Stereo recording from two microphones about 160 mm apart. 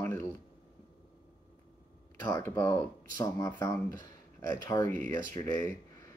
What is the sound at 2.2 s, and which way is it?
Speech, 15° left (ahead or behind).